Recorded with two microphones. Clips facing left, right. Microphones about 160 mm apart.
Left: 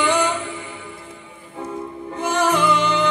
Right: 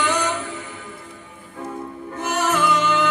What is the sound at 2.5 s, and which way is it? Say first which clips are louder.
Music: even; 15° left (ahead or behind).